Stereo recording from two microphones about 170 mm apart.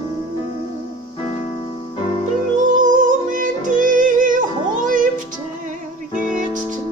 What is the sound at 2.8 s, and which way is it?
Music, 50° right (ahead or behind).